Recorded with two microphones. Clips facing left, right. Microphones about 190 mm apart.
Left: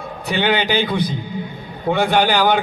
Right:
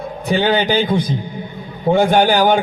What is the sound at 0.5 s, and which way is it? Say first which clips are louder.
A man's voice: right 2 dB; 40° right (ahead or behind).